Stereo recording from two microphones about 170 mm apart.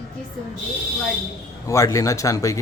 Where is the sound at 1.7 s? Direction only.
20° left (ahead or behind).